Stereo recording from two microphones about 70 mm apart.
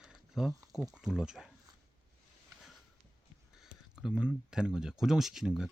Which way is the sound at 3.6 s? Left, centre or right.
Centre.